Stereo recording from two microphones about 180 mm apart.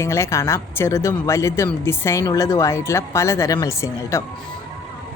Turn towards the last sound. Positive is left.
turn(degrees=15)  # may be behind; listen again after turning